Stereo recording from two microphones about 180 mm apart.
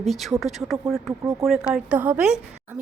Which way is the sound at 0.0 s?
Centre (ahead or behind).